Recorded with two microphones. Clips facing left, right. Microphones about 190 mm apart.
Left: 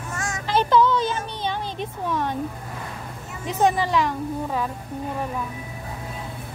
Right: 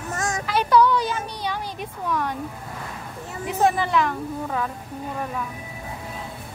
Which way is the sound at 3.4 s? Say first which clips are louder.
Left 1 dB; 20° left (ahead or behind).